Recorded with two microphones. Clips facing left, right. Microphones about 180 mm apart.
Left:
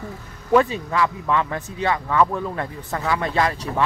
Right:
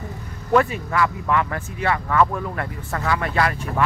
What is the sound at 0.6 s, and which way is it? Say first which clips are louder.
Speech: even; 20° left (ahead or behind).